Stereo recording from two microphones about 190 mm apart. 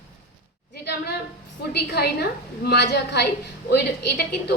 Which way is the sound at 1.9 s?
55° left (ahead or behind).